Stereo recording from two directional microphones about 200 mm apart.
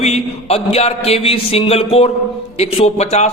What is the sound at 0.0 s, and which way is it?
A man's voice, 30° left (ahead or behind).